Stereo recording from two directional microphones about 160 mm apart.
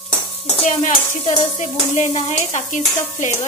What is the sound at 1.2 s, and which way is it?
Stir, 40° left (ahead or behind).